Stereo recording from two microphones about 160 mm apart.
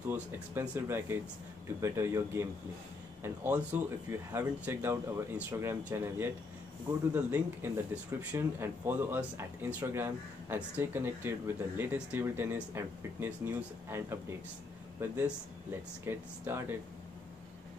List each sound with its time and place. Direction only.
0.1 s speech: 15° right (ahead or behind)
3.4 s speech: 10° right (ahead or behind)